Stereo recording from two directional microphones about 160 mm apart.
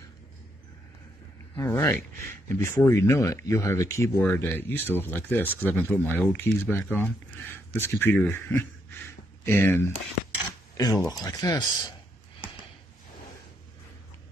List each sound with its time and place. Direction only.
1.6 s speech: 15° left (ahead or behind)